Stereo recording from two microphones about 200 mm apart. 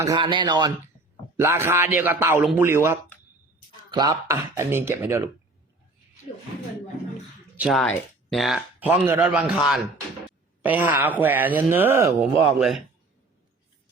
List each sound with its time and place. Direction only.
0.0 s speech: 20° right (ahead or behind)
7.5 s speech: 5° right (ahead or behind)
10.6 s speech: 10° right (ahead or behind)
12.5 s a man's voice: centre (ahead or behind)